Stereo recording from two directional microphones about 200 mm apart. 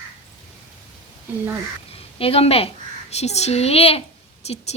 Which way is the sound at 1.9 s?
30° left (ahead or behind).